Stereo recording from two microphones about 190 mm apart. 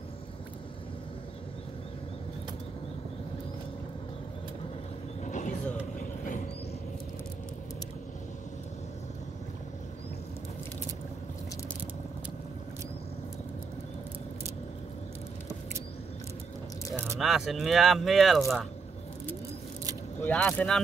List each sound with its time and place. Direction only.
5.2 s vehicle: 40° left (ahead or behind)
17.2 s speech: centre (ahead or behind)
20.2 s speech: 10° left (ahead or behind)